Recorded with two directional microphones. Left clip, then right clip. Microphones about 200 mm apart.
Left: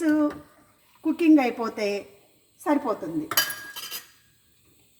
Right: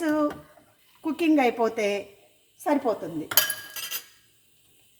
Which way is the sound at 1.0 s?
25° right (ahead or behind).